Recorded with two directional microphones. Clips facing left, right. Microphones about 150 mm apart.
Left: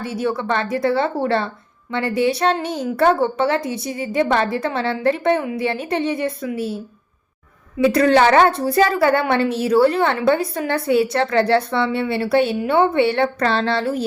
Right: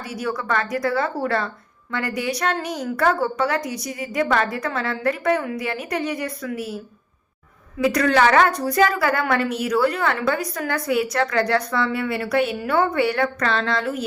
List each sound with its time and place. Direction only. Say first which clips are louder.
0.0 s a woman's voice: left 5 dB; 25° left (ahead or behind)
7.8 s a woman's voice: left 4 dB; 30° left (ahead or behind)